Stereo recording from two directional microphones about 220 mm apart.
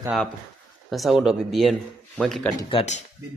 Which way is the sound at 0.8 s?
Centre (ahead or behind).